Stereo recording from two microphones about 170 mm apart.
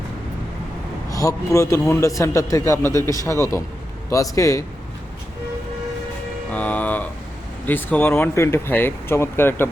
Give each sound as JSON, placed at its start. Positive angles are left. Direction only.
{"t": 1.1, "sound": "a man's voice", "side_deg": 20}
{"t": 6.5, "sound": "a man's voice", "side_deg": 10}